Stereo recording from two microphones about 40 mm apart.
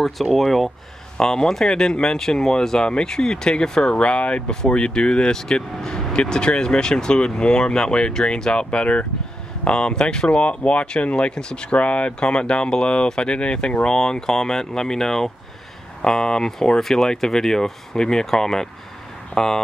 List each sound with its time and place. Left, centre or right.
0.0 s speech: centre
1.1 s speech: centre
4.0 s speech: left; by 19.6 s centre